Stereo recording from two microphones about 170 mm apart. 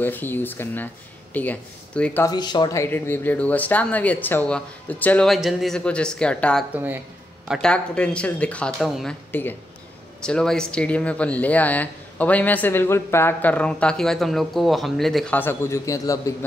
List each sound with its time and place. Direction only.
0.0 s speech: 10° left (ahead or behind)
2.2 s speech: 25° left (ahead or behind)
2.8 s speech: 10° left (ahead or behind)
6.7 s speech: 10° right (ahead or behind)
7.4 s speech: centre (ahead or behind)
9.3 s speech: 10° left (ahead or behind)